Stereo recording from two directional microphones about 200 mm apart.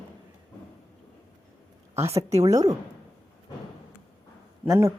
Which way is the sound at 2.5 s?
15° right (ahead or behind).